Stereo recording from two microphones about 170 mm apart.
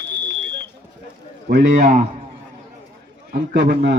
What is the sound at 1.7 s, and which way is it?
Speech, 45° right (ahead or behind).